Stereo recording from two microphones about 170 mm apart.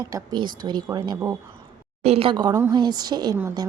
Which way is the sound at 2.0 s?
35° right (ahead or behind).